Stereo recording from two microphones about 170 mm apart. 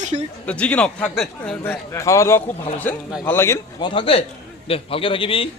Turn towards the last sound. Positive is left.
turn(degrees=30)  # may be behind; listen again after turning